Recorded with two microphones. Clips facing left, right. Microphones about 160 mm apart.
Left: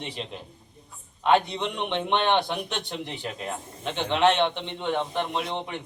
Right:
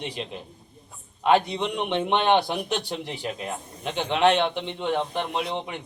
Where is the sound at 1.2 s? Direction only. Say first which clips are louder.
Right 1 dB; 10° right (ahead or behind).